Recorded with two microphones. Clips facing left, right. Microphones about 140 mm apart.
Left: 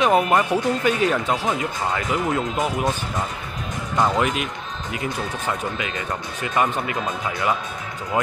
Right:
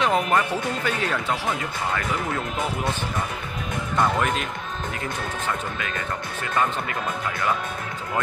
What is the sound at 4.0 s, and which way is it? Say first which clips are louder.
Speech: left 2 dB; 15° left (ahead or behind).